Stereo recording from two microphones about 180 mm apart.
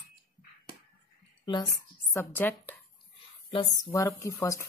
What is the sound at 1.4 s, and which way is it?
Speech, 20° left (ahead or behind).